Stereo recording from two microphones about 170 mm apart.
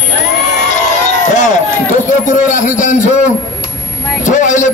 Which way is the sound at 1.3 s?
45° left (ahead or behind).